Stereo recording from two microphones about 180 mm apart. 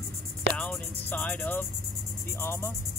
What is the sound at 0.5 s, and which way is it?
Speech, 5° left (ahead or behind).